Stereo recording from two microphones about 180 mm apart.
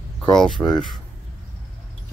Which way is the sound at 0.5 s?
20° left (ahead or behind).